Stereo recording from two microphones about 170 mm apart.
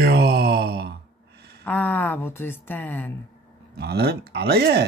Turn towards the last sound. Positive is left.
turn(degrees=-75)  # may be behind; listen again after turning